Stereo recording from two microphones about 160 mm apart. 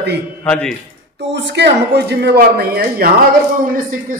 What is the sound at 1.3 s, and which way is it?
A man's voice, 90° right.